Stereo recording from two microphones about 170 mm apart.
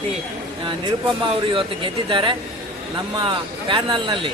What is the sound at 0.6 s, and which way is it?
Speech, 30° right (ahead or behind).